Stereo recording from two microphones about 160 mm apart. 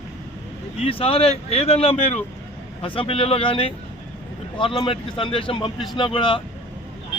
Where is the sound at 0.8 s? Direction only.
35° left (ahead or behind).